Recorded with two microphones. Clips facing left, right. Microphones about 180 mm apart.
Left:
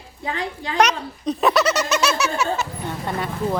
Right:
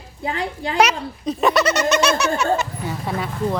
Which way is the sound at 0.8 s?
5° right (ahead or behind).